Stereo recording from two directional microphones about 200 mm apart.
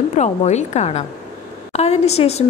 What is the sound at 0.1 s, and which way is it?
A woman's voice, 35° left (ahead or behind).